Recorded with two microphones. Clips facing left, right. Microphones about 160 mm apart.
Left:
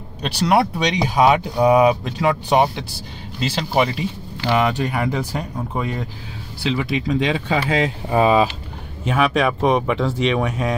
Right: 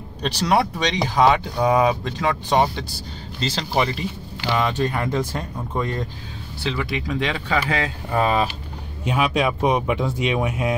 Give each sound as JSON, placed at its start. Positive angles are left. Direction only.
{"t": 0.2, "sound": "speech", "side_deg": 5}
{"t": 9.1, "sound": "speech", "side_deg": -15}